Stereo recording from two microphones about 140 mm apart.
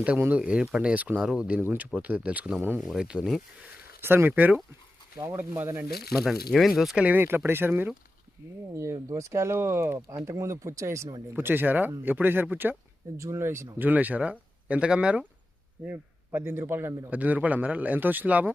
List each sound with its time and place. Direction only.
0.0 s a man's voice: 10° right (ahead or behind)
4.0 s a man's voice: 15° right (ahead or behind)
6.1 s a man's voice: centre (ahead or behind)